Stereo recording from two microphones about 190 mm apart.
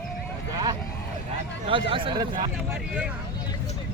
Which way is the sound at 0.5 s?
20° right (ahead or behind).